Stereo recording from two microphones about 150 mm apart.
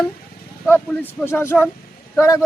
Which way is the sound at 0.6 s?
15° left (ahead or behind).